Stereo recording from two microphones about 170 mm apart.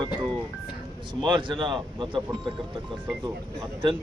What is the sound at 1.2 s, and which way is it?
A man's voice, 30° right (ahead or behind).